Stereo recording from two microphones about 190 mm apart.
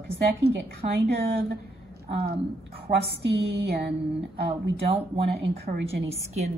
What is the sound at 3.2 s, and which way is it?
Speech, 60° right (ahead or behind).